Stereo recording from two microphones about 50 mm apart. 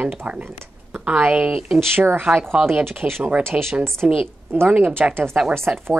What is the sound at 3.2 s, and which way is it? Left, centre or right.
Speech, right.